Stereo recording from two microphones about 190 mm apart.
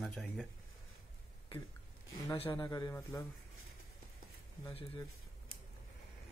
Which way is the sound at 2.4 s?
20° left (ahead or behind).